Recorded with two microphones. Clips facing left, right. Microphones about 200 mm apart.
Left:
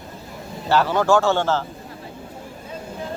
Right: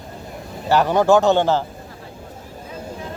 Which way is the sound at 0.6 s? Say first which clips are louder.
Right 3 dB; 15° right (ahead or behind).